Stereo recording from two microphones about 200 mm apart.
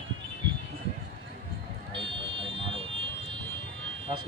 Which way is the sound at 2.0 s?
30° right (ahead or behind).